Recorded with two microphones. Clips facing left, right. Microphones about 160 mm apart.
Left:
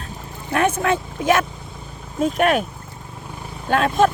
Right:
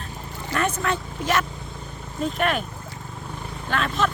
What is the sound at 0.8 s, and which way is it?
Speech, 50° left (ahead or behind).